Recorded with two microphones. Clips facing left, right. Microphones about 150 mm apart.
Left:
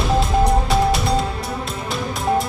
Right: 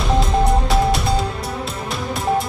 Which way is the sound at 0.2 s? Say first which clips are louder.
Even; centre (ahead or behind).